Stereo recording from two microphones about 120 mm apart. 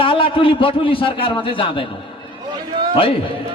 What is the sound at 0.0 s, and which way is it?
A man's voice, 45° left (ahead or behind).